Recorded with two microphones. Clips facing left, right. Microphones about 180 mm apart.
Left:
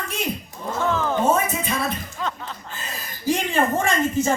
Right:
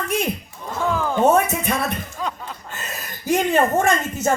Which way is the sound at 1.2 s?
65° right (ahead or behind).